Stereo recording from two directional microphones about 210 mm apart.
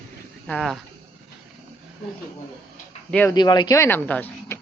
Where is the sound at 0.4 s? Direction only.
Centre (ahead or behind).